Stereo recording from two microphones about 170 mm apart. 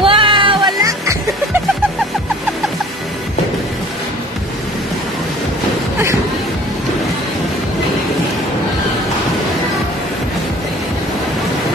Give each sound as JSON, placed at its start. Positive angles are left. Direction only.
{"t": 0.0, "sound": "music", "side_deg": -30}